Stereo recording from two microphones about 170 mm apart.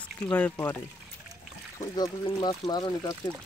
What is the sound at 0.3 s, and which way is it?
Speech, 10° left (ahead or behind).